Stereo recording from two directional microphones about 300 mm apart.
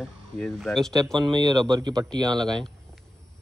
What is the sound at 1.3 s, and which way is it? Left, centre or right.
Speech, centre.